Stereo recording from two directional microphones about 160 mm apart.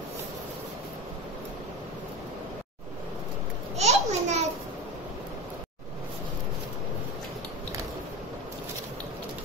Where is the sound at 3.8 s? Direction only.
45° right (ahead or behind).